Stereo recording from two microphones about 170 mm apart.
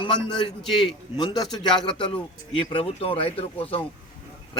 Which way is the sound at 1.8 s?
30° left (ahead or behind).